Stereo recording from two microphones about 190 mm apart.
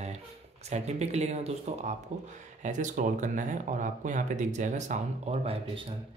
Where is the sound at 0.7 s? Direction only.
35° right (ahead or behind).